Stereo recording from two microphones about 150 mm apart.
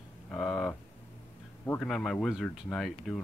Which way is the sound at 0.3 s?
5° left (ahead or behind).